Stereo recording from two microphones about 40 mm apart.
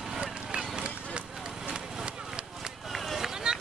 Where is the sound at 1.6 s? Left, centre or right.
Centre.